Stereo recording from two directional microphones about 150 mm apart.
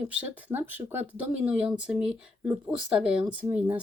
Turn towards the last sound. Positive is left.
turn(degrees=-10)  # may be behind; listen again after turning